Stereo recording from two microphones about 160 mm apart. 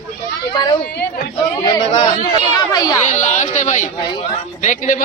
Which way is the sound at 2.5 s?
25° left (ahead or behind).